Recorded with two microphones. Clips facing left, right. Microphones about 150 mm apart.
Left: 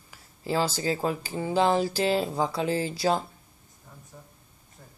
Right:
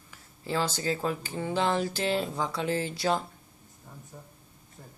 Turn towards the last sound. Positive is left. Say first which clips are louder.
# left 2 dB
turn(degrees=35)  # may be behind; listen again after turning